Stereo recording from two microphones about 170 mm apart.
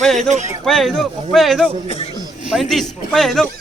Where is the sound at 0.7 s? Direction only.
Centre (ahead or behind).